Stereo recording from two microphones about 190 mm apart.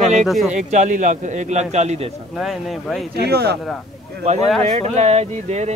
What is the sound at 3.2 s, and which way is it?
Speech, 60° right (ahead or behind).